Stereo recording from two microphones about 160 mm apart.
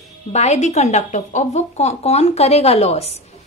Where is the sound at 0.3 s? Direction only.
45° left (ahead or behind).